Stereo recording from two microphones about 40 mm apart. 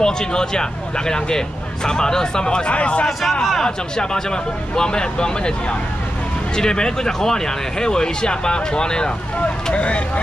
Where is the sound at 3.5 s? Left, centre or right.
Centre.